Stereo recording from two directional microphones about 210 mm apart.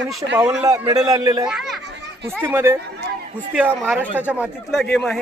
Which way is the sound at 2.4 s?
10° right (ahead or behind).